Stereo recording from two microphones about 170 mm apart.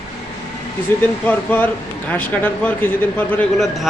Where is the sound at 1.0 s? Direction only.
10° left (ahead or behind).